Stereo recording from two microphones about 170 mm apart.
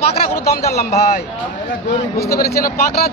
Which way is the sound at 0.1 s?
35° left (ahead or behind).